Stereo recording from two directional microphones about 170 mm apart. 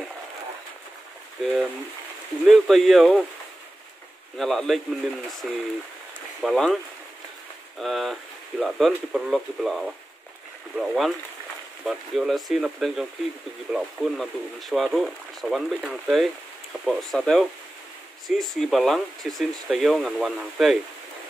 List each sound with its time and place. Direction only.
1.4 s speech: centre (ahead or behind)
4.4 s speech: centre (ahead or behind)
7.8 s speech: centre (ahead or behind)